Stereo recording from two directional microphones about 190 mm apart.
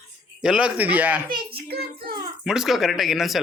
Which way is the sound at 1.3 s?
25° right (ahead or behind).